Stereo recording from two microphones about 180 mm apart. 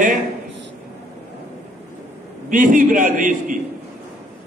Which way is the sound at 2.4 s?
45° right (ahead or behind).